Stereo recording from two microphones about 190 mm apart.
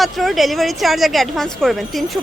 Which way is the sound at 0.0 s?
Centre (ahead or behind).